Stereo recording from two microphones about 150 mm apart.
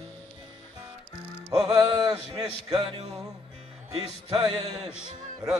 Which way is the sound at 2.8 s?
40° right (ahead or behind).